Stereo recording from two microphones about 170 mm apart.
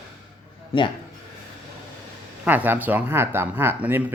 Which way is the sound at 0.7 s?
35° left (ahead or behind).